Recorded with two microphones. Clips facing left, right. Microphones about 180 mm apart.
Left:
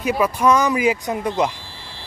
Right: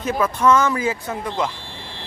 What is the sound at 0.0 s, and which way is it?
Speech, 10° left (ahead or behind).